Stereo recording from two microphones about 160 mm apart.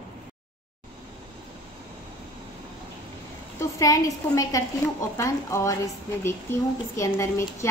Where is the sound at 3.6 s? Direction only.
20° left (ahead or behind).